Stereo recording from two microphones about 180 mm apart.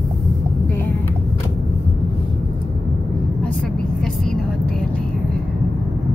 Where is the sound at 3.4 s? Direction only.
5° left (ahead or behind).